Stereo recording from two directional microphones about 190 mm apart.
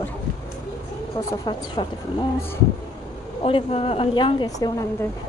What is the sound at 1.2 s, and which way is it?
A woman's voice, 25° left (ahead or behind).